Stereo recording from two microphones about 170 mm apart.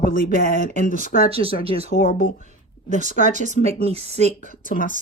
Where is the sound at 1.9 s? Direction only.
55° left (ahead or behind).